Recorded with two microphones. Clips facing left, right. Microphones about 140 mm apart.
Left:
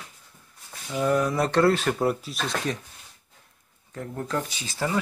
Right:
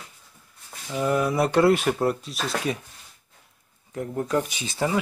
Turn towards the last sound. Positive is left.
turn(degrees=-15)  # may be behind; listen again after turning